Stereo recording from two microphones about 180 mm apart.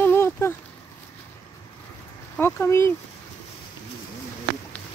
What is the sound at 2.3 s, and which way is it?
Speech, 15° left (ahead or behind).